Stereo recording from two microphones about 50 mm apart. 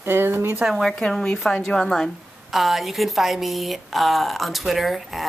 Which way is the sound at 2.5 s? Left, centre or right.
Centre.